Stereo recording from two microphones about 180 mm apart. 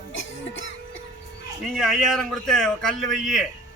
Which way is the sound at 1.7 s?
Centre (ahead or behind).